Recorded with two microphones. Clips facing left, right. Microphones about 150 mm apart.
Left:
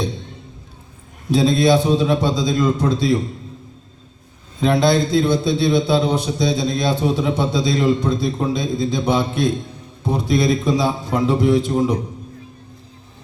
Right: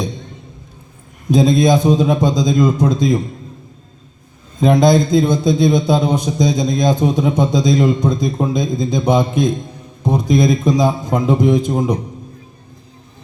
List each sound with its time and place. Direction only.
1.3 s a man's voice: 45° right (ahead or behind)
4.6 s a man's voice: 45° right (ahead or behind)